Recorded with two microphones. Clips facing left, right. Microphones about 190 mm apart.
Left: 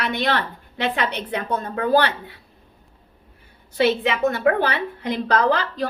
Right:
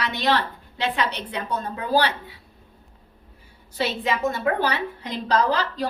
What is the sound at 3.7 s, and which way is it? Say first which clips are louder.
A woman's voice: left 5 dB; 65° left (ahead or behind).